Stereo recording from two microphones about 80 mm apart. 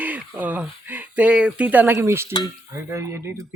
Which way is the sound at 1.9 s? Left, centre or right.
Right.